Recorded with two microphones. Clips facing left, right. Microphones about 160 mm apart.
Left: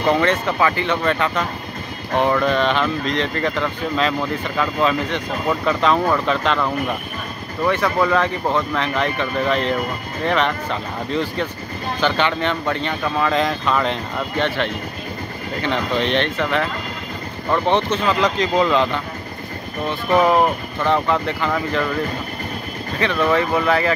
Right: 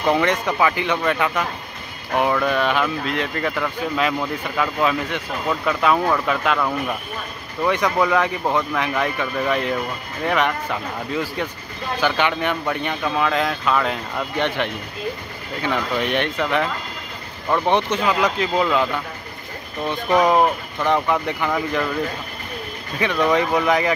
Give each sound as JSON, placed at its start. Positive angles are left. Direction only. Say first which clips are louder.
{"t": 0.1, "sound": "speech", "louder": "left 1 dB", "side_deg": -15}
{"t": 2.4, "sound": "speech", "louder": "left 2 dB", "side_deg": -10}
{"t": 14.4, "sound": "speech", "louder": "left 1 dB", "side_deg": -15}
{"t": 15.6, "sound": "speech", "louder": "left 1 dB", "side_deg": -10}
{"t": 19.9, "sound": "speech", "louder": "left 1 dB", "side_deg": -15}
{"t": 22.9, "sound": "speech", "louder": "even", "side_deg": -15}